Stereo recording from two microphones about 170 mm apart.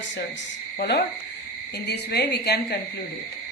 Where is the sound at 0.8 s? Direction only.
75° left (ahead or behind).